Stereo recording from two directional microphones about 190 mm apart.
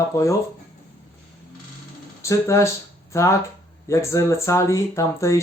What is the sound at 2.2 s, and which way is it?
Speech, 15° left (ahead or behind).